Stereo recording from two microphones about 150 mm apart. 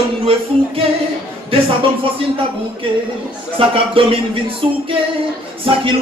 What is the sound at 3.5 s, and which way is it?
Music, 35° right (ahead or behind).